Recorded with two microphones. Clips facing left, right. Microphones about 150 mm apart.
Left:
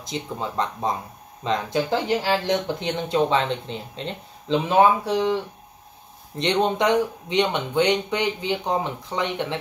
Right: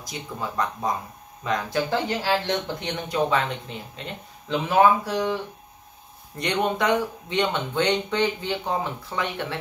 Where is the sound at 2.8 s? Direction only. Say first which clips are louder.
Left 3 dB; 25° left (ahead or behind).